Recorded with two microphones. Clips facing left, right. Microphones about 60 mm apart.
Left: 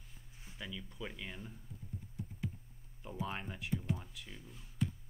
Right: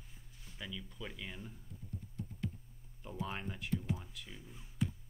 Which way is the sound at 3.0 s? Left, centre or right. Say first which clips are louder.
Even; centre.